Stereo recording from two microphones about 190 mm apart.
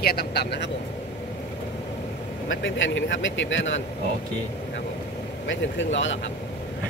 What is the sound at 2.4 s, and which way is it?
Speech, 80° left.